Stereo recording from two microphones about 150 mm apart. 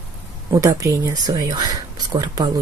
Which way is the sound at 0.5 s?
20° right (ahead or behind).